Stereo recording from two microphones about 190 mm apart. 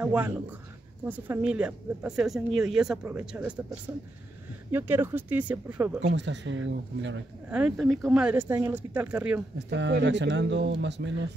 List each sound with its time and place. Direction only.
0.0 s speech: 5° right (ahead or behind)
6.0 s speech: 65° right (ahead or behind)
7.5 s speech: 5° right (ahead or behind)
9.7 s speech: 65° right (ahead or behind)